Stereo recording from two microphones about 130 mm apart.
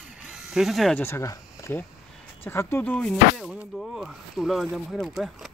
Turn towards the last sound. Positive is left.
turn(degrees=0)  # may be behind; listen again after turning